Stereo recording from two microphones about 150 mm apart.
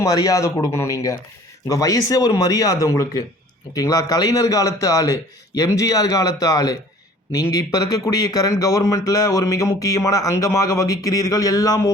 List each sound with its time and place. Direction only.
0.0 s speech: 25° left (ahead or behind)